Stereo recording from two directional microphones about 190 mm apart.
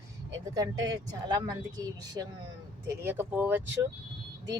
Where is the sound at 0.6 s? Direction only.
20° right (ahead or behind).